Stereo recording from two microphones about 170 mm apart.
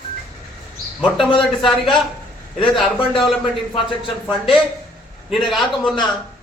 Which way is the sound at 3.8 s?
30° left (ahead or behind).